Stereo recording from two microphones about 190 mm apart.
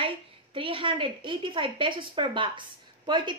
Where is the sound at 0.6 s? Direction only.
25° right (ahead or behind).